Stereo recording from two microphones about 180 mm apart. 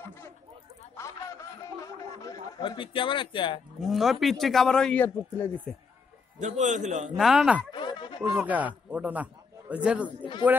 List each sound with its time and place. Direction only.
0.9 s a sound: 15° left (ahead or behind)
2.6 s speech: 30° left (ahead or behind)
3.8 s a man's voice: centre (ahead or behind)
6.4 s a man's voice: 40° right (ahead or behind)
7.2 s a man's voice: centre (ahead or behind)
7.7 s a sound: 25° left (ahead or behind)
8.2 s a man's voice: 10° right (ahead or behind)